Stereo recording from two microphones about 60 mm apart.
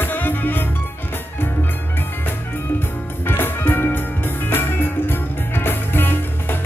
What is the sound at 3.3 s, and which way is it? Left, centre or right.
Music, left.